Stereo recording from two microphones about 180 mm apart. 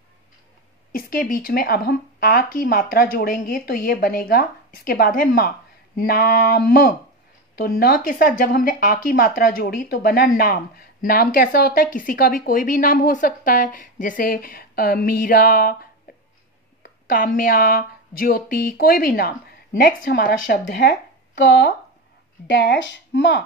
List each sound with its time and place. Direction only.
0.9 s speech: 50° left (ahead or behind)
21.4 s a woman's voice: 80° left